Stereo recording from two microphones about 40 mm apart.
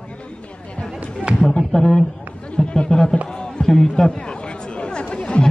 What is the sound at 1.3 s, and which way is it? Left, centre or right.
A man's voice, centre.